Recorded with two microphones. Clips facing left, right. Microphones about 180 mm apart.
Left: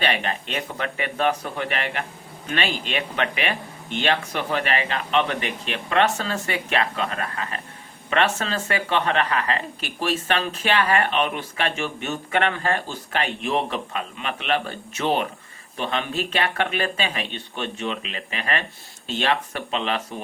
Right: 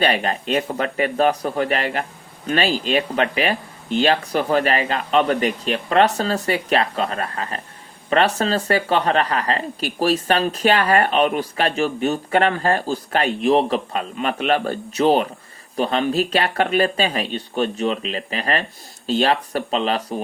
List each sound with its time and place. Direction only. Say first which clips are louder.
0.0 s speech: right 5 dB; 40° right (ahead or behind)